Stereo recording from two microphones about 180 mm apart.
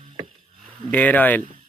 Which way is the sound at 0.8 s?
10° left (ahead or behind).